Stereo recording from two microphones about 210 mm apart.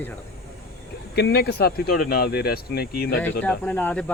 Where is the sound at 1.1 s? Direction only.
50° left (ahead or behind).